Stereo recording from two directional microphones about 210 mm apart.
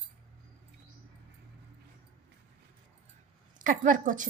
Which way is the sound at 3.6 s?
40° right (ahead or behind).